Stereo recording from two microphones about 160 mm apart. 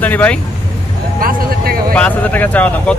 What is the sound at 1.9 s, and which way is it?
Speech, 10° left (ahead or behind).